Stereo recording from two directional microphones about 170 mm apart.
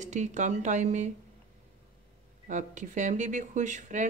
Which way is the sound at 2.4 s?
45° right (ahead or behind).